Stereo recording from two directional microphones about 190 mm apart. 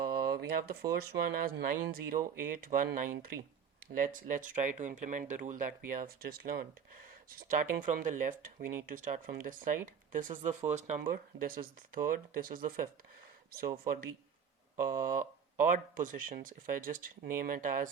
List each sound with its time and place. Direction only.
0.0 s speech: 55° right (ahead or behind)
7.8 s speech: 45° right (ahead or behind)
11.1 s speech: 50° right (ahead or behind)
14.8 s speech: 45° right (ahead or behind)